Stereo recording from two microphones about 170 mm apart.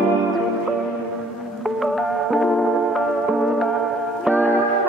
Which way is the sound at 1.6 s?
Centre (ahead or behind).